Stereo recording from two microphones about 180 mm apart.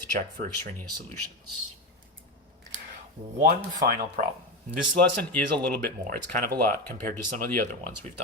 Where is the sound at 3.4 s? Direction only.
60° right (ahead or behind).